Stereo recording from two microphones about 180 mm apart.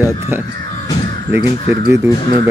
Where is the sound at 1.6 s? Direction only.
30° left (ahead or behind).